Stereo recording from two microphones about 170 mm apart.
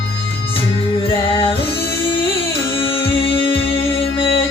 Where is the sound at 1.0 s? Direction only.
30° left (ahead or behind).